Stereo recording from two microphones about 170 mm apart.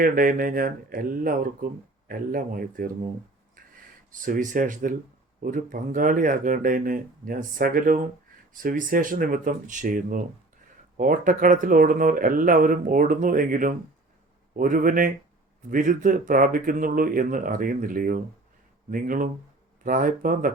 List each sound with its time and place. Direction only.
0.0 s speech: 55° right (ahead or behind)
4.1 s speech: 50° right (ahead or behind)